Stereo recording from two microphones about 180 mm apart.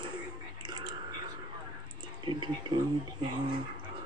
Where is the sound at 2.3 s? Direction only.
25° right (ahead or behind).